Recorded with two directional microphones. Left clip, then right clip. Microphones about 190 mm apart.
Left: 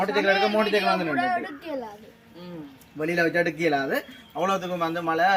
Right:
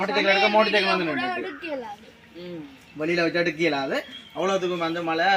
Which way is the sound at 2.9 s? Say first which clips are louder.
Even; centre (ahead or behind).